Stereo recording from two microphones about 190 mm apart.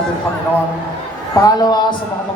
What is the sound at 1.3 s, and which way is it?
Speech, 20° left (ahead or behind).